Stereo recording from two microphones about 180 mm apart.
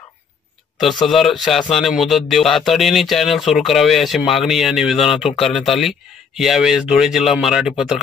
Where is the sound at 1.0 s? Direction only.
Centre (ahead or behind).